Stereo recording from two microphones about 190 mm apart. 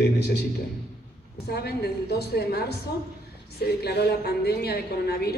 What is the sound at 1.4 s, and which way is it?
A man's voice, 60° left (ahead or behind).